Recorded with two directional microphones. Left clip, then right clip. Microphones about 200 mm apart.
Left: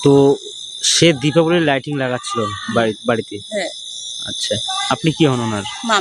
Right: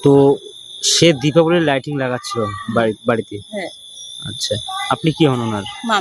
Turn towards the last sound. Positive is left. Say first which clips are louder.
# left 1 dB
turn(degrees=0)  # may be behind; listen again after turning